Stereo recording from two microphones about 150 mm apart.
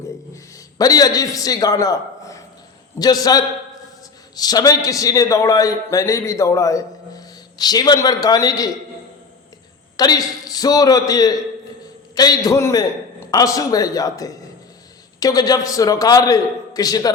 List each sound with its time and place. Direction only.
0.5 s a man's voice: 25° left (ahead or behind)
10.0 s a man's voice: 25° left (ahead or behind)